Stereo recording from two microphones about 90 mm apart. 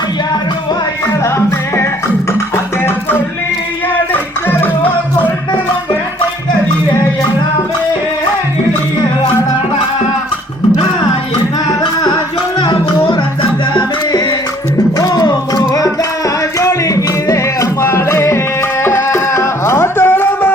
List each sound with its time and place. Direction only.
1.2 s music: 30° left (ahead or behind)
4.1 s music: 20° left (ahead or behind)
11.7 s music: 55° left (ahead or behind)
14.9 s music: 45° left (ahead or behind); by 20.5 s 25° left (ahead or behind)